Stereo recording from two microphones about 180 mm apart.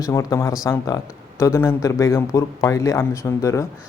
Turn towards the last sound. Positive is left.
turn(degrees=15)  # may be behind; listen again after turning